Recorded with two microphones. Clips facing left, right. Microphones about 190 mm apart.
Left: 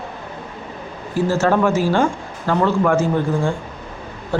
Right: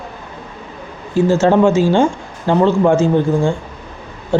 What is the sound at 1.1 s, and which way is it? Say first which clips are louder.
Speech: right 5 dB; 25° right (ahead or behind).